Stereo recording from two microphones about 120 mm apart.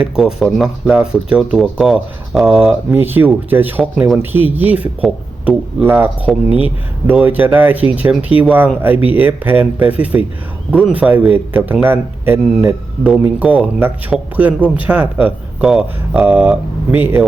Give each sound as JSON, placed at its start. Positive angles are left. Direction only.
{"t": 0.0, "sound": "speech", "side_deg": -5}
{"t": 2.5, "sound": "speech", "side_deg": -15}